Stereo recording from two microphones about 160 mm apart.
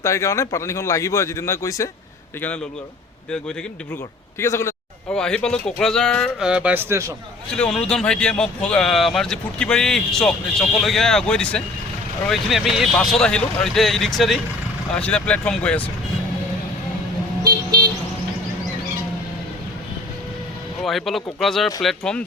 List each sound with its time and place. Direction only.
0.0 s speech: 20° left (ahead or behind)
4.4 s speech: 15° left (ahead or behind)
5.1 s speech: 5° left (ahead or behind)
6.4 s speech: 5° right (ahead or behind)
7.5 s speech: 5° left (ahead or behind)
17.4 s vehicle: 25° right (ahead or behind)
20.8 s speech: centre (ahead or behind)